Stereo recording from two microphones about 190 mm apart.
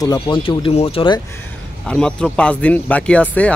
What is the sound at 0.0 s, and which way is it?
Speech, 25° left (ahead or behind).